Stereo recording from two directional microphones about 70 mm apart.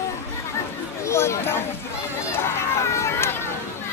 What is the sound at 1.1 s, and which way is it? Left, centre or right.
Chatter, left.